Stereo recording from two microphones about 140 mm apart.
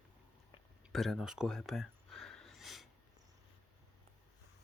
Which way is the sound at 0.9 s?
Centre (ahead or behind).